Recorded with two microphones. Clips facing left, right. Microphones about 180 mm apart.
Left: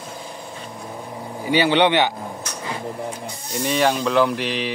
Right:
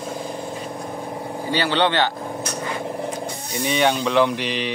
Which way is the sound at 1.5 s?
15° left (ahead or behind).